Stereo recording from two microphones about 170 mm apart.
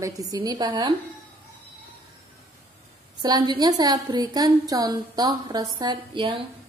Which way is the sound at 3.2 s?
25° right (ahead or behind).